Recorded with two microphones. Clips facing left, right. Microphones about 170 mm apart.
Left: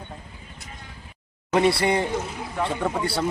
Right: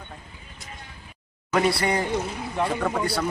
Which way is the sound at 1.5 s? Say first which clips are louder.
Left 2 dB; 25° left (ahead or behind).